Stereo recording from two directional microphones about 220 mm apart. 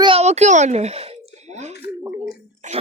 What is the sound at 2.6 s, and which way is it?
Speech, 35° right (ahead or behind).